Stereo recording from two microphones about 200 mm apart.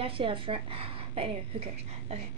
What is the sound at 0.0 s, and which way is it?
A woman's voice, 25° right (ahead or behind).